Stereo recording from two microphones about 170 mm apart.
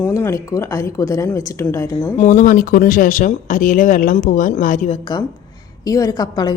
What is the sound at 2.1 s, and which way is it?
Speech, 45° left (ahead or behind).